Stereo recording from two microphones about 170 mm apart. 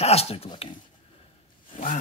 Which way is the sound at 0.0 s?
35° left (ahead or behind).